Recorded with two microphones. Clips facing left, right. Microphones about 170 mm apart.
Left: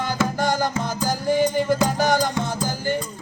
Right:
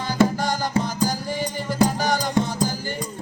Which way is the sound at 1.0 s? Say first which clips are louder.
Left 6 dB; 50° left (ahead or behind).